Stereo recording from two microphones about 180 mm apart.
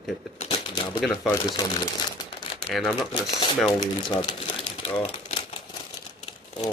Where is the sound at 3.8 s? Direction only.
25° left (ahead or behind).